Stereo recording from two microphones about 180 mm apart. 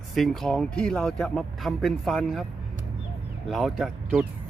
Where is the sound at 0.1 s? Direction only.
Centre (ahead or behind).